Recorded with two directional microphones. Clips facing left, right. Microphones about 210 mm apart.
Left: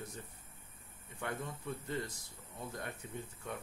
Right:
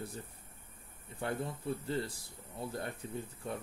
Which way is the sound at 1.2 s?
30° right (ahead or behind).